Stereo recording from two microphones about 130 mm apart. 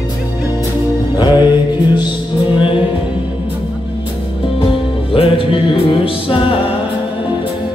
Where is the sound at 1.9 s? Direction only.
35° left (ahead or behind).